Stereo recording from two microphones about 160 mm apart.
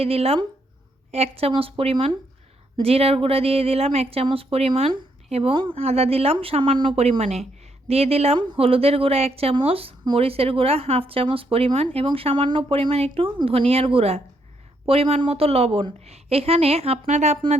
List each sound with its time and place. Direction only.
0.0 s a woman's voice: 40° right (ahead or behind)